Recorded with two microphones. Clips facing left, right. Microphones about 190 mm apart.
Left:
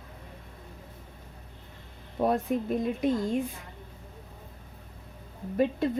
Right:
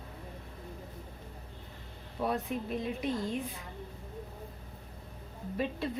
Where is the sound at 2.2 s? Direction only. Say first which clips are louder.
Left 7 dB; 45° left (ahead or behind).